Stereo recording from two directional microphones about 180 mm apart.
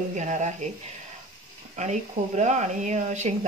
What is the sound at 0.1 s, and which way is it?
Speech, 40° right (ahead or behind).